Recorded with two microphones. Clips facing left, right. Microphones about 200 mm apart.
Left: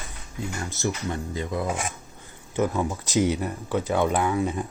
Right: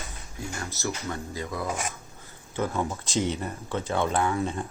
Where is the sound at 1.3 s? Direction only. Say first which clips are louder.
Left 4 dB; 20° left (ahead or behind).